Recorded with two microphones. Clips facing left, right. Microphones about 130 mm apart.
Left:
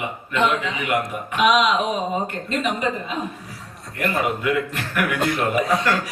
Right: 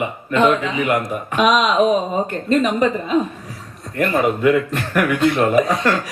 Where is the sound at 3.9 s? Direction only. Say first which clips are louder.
Right 5 dB; 40° right (ahead or behind).